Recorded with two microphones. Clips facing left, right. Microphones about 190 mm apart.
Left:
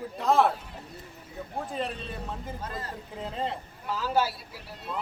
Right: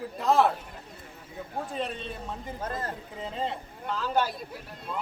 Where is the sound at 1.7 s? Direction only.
Centre (ahead or behind).